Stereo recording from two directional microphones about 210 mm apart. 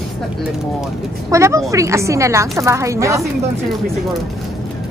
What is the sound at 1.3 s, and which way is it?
A woman's voice, 15° right (ahead or behind).